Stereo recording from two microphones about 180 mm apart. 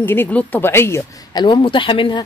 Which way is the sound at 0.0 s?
10° left (ahead or behind).